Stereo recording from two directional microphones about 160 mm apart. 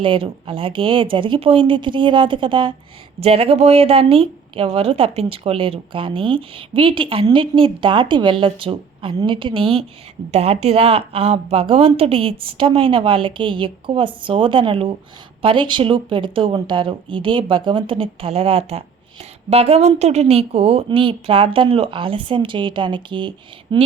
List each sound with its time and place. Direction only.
0.0 s speech: 30° right (ahead or behind)